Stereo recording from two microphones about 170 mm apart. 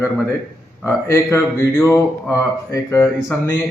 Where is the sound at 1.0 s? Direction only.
15° left (ahead or behind).